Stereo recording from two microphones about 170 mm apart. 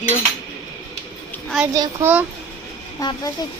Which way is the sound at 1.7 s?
20° right (ahead or behind).